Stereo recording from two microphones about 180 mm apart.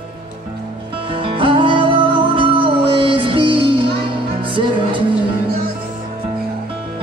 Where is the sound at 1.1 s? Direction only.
30° right (ahead or behind).